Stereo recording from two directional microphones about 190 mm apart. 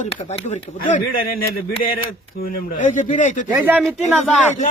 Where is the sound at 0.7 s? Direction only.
50° left (ahead or behind).